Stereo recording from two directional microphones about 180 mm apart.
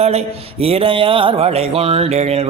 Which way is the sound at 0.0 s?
35° right (ahead or behind).